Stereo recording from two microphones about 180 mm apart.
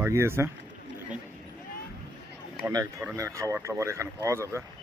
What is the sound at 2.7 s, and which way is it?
Speech, 20° right (ahead or behind).